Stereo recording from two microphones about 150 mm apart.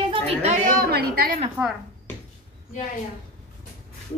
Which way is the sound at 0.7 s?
90° right.